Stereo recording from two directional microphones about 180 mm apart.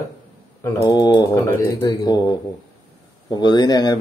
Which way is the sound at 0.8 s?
20° left (ahead or behind).